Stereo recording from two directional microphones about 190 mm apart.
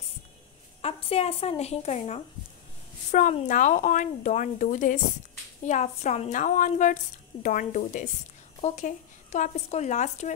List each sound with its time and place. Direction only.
0.8 s speech: 30° left (ahead or behind)